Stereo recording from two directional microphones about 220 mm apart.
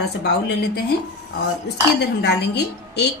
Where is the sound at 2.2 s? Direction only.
50° left (ahead or behind).